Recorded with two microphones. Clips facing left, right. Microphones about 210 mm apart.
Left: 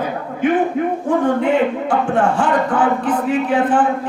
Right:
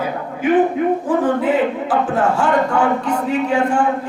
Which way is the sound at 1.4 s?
Centre (ahead or behind).